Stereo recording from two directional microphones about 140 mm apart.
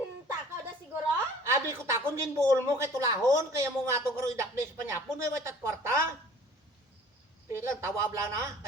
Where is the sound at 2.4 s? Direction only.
20° right (ahead or behind).